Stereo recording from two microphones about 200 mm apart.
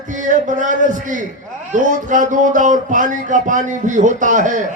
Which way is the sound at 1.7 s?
40° right (ahead or behind).